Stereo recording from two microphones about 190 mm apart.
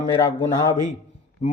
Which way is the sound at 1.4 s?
35° left (ahead or behind).